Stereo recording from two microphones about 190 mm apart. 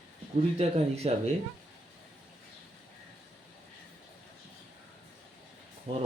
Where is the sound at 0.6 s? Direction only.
35° right (ahead or behind).